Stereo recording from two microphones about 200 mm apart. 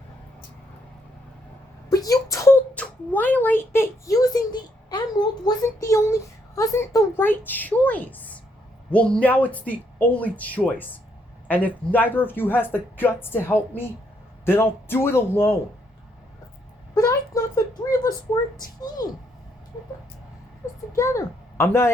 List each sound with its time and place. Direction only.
1.9 s speech: 15° left (ahead or behind)
14.4 s speech: 10° left (ahead or behind)
16.9 s a sound: 15° left (ahead or behind)
18.5 s a woman's voice: 20° left (ahead or behind)
20.9 s a child's voice: 15° left (ahead or behind)